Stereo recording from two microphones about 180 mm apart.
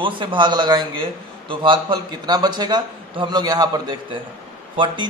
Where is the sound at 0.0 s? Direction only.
25° right (ahead or behind).